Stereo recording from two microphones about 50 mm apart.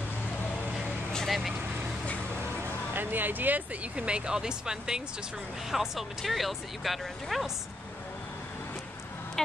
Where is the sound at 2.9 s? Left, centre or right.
Right.